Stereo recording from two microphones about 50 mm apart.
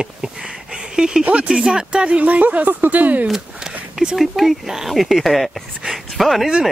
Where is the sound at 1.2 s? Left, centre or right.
Right.